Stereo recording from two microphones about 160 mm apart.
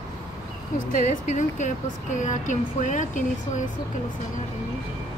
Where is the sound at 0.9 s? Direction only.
50° left (ahead or behind).